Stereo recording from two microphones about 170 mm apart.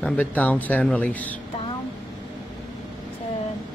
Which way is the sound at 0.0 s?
10° left (ahead or behind).